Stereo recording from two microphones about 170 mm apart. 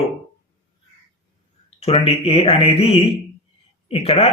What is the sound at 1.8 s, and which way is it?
Speech, 35° left (ahead or behind).